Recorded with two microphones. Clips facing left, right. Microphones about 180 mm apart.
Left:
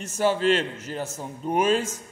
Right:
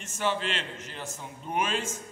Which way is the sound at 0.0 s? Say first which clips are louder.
Left 8 dB; 40° left (ahead or behind).